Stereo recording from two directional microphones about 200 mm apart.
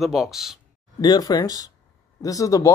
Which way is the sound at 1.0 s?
20° left (ahead or behind).